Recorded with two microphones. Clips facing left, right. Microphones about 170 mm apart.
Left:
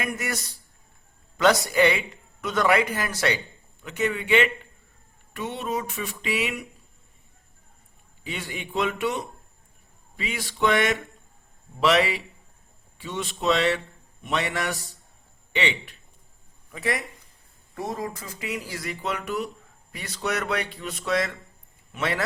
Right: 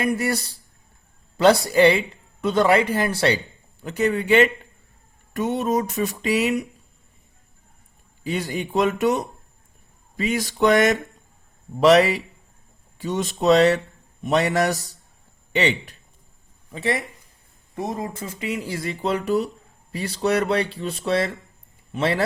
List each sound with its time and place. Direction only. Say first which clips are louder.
0.0 s speech: right 8 dB; 35° right (ahead or behind)
8.2 s speech: right 8 dB; 40° right (ahead or behind)
16.7 s speech: right 4 dB; 25° right (ahead or behind)